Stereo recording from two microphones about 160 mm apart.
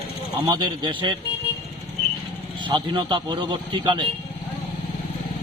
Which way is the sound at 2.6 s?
30° right (ahead or behind).